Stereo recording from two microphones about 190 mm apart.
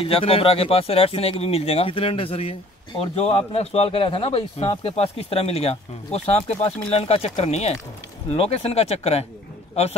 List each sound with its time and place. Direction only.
0.0 s speech: 30° left (ahead or behind)